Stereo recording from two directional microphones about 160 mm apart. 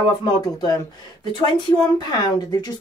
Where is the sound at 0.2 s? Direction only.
25° left (ahead or behind).